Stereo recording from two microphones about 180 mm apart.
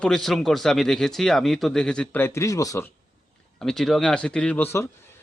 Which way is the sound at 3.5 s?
Centre (ahead or behind).